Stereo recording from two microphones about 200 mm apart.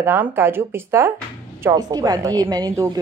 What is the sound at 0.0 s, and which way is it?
A woman's voice, 10° right (ahead or behind).